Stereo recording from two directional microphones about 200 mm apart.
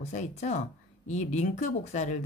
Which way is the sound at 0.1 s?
35° left (ahead or behind).